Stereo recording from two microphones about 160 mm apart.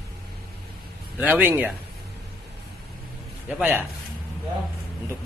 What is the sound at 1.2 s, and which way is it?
Speech, 10° right (ahead or behind).